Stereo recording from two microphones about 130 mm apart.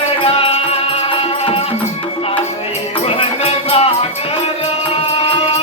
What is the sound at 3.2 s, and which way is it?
Music, 50° left (ahead or behind).